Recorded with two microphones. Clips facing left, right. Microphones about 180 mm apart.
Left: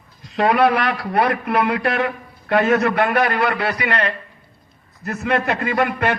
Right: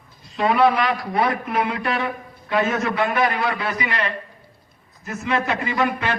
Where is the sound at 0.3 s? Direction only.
70° left (ahead or behind).